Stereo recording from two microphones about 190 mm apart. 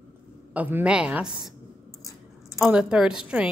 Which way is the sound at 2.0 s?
15° left (ahead or behind).